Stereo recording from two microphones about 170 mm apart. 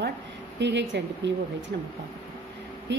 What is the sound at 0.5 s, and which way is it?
Speech, 90° right.